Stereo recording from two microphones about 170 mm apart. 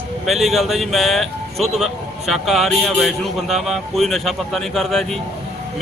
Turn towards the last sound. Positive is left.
turn(degrees=0)  # may be behind; listen again after turning